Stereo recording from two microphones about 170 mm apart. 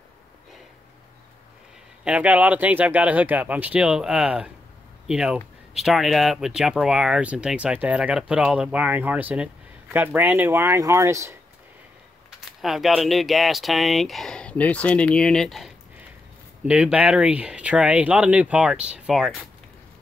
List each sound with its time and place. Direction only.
2.0 s speech: 10° right (ahead or behind)
12.4 s speech: centre (ahead or behind)